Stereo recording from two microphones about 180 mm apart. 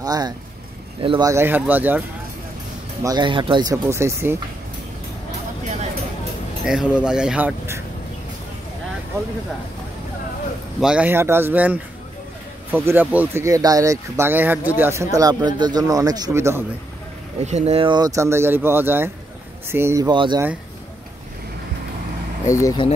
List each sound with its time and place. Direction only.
0.0 s speech: 20° right (ahead or behind)
1.3 s speech: 10° right (ahead or behind)
3.0 s speech: 20° right (ahead or behind)
6.6 s speech: 5° right (ahead or behind)
10.8 s speech: 5° right (ahead or behind)
17.4 s speech: 35° right (ahead or behind)
22.5 s speech: 15° left (ahead or behind)